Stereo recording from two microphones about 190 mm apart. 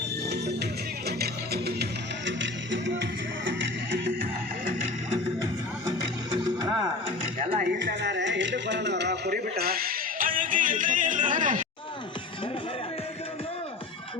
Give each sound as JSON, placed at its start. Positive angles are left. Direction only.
{"t": 0.3, "sound": "music", "side_deg": -60}
{"t": 6.3, "sound": "music", "side_deg": -25}
{"t": 7.5, "sound": "a sound", "side_deg": -50}
{"t": 7.8, "sound": "music", "side_deg": -65}